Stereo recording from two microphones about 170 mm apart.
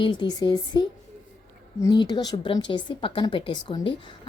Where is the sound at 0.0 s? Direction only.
25° left (ahead or behind).